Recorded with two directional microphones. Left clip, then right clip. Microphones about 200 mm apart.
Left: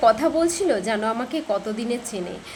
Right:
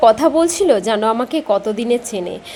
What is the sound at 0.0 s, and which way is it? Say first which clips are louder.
A woman's voice: right 6 dB; 25° right (ahead or behind).